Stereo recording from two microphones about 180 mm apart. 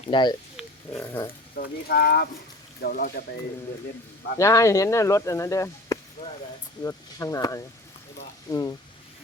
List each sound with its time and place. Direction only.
0.1 s speech: 25° left (ahead or behind)
0.9 s speech: 15° left (ahead or behind)
1.5 s speech: 60° left (ahead or behind)
4.4 s speech: 15° left (ahead or behind)